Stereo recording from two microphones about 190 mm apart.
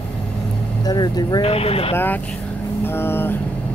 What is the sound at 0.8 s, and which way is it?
Speech, 20° left (ahead or behind).